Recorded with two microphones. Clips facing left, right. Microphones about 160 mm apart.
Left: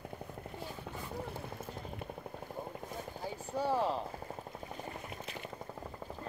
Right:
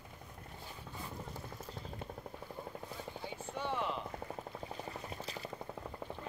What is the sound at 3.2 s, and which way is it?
Vehicle, 35° left (ahead or behind).